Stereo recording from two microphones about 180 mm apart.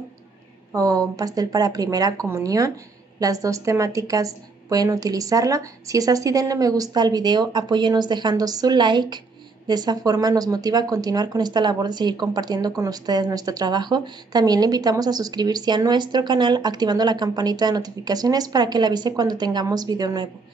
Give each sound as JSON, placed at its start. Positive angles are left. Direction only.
{"t": 0.7, "sound": "speech", "side_deg": -20}